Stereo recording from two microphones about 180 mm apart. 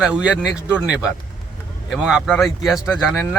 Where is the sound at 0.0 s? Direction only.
5° right (ahead or behind).